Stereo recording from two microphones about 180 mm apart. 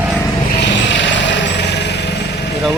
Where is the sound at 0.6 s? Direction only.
80° left.